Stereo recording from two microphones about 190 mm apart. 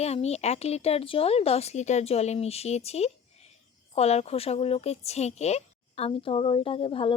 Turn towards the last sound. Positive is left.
turn(degrees=30)  # may be behind; listen again after turning